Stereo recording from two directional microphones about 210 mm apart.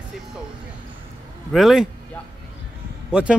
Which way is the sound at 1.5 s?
Centre (ahead or behind).